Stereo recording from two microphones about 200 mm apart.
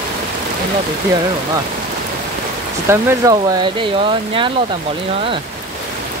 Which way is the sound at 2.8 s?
20° right (ahead or behind).